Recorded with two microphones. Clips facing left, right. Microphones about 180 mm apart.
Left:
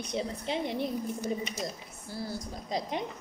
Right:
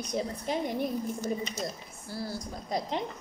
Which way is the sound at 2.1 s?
20° left (ahead or behind).